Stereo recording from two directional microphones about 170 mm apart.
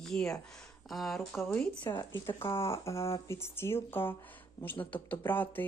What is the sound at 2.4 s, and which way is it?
Speech, 30° left (ahead or behind).